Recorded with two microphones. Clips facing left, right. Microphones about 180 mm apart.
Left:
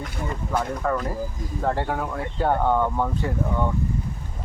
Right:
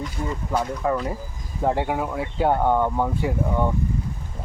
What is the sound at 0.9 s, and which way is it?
Speech, centre (ahead or behind).